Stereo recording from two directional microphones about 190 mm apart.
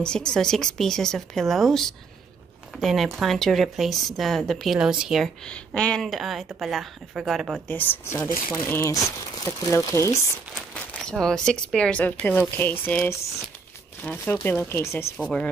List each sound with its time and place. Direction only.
0.0 s speech: 5° left (ahead or behind)
7.7 s speech: 10° left (ahead or behind)
10.5 s crumpling: 5° left (ahead or behind)
11.7 s speech: 5° left (ahead or behind)